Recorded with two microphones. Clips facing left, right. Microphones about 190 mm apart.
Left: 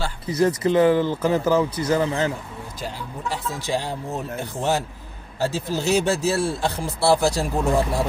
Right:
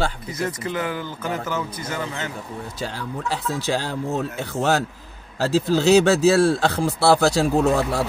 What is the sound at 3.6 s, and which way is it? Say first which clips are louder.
Speech: right 2 dB; 90° right.